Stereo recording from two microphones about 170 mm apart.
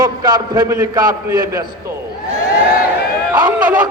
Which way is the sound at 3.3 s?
10° right (ahead or behind).